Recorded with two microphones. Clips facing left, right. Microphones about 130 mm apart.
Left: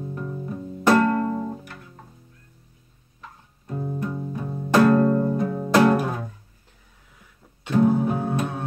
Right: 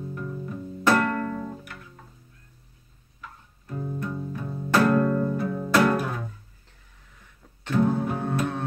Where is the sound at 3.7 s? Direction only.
20° left (ahead or behind).